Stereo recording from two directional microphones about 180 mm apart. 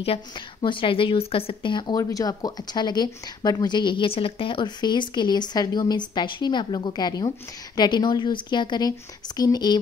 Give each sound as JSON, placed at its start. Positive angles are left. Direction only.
{"t": 0.0, "sound": "a woman's voice", "side_deg": 30}